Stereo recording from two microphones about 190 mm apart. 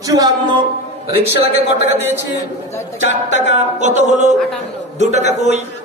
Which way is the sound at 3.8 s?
40° right (ahead or behind).